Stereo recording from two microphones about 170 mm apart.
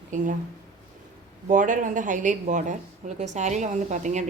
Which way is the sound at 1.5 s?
50° right (ahead or behind).